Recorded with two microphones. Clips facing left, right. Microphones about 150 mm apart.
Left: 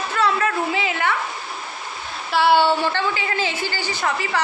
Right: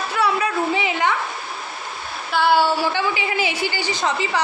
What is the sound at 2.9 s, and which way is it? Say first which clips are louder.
A man's voice: right 1 dB; 15° right (ahead or behind).